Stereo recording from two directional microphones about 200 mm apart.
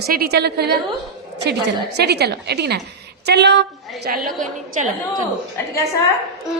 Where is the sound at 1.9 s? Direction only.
55° right (ahead or behind).